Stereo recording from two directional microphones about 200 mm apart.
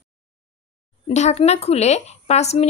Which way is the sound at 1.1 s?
35° left (ahead or behind).